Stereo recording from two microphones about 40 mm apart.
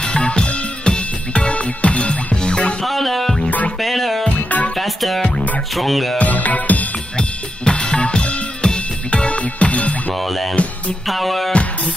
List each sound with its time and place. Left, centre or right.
0.0 s music: left
2.8 s music: centre
3.4 s music: left
3.8 s music: centre
6.1 s music: left
7.2 s drum kit: left
10.1 s music: centre